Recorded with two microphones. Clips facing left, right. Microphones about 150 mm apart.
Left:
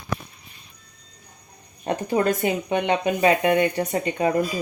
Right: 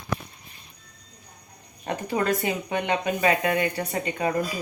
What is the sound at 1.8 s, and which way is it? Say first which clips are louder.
Speech: left 4 dB; 30° left (ahead or behind).